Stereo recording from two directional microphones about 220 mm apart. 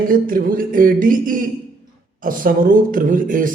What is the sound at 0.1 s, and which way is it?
Speech, 40° right (ahead or behind).